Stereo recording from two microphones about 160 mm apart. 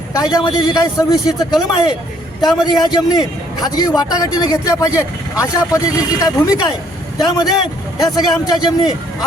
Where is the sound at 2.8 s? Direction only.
25° left (ahead or behind).